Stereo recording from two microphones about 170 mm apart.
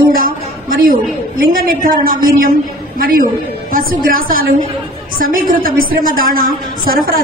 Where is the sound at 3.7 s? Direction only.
55° right (ahead or behind).